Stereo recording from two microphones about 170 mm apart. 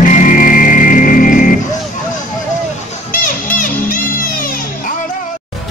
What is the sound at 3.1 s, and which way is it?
Music, 55° left (ahead or behind).